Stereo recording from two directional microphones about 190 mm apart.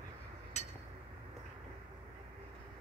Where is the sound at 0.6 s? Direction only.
35° left (ahead or behind).